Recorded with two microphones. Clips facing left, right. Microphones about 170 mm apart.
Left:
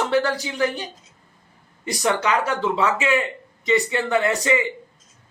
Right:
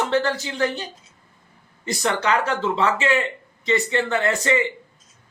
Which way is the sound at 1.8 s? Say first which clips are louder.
Left 1 dB; 15° left (ahead or behind).